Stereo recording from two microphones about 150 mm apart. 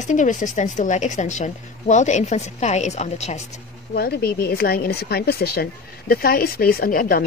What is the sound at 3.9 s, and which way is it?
A woman's voice, 85° left.